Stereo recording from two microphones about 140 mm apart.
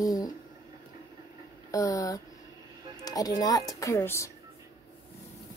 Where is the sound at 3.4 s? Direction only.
25° left (ahead or behind).